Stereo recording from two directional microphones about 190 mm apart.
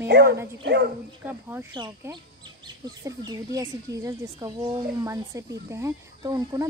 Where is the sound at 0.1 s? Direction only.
60° right (ahead or behind).